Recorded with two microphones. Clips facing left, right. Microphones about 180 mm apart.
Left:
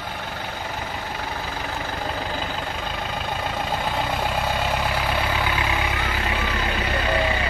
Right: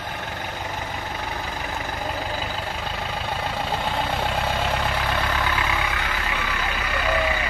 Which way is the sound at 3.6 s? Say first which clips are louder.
Even; 5° left (ahead or behind).